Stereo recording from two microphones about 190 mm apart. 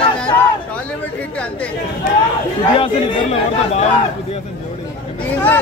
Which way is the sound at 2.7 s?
30° left (ahead or behind).